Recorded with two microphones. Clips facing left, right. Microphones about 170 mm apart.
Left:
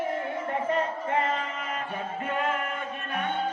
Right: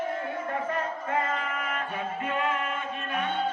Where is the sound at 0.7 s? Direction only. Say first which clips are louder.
Left 5 dB; 25° left (ahead or behind).